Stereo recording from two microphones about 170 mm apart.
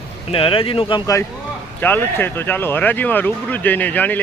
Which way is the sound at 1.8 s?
10° left (ahead or behind).